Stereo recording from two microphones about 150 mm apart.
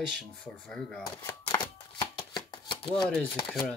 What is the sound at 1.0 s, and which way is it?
Chopping, 25° left (ahead or behind).